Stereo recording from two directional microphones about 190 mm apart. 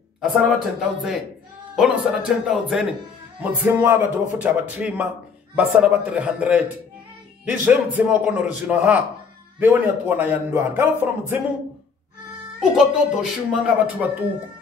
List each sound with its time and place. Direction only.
0.2 s a man's voice: centre (ahead or behind)
7.6 s a man's voice: 10° right (ahead or behind)
12.5 s speech: 5° right (ahead or behind)